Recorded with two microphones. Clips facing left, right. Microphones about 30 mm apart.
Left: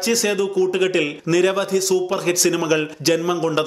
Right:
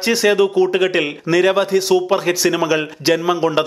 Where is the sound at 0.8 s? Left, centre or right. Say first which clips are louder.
Right 2 dB; centre.